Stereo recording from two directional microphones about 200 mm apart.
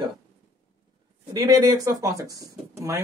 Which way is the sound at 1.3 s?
20° right (ahead or behind).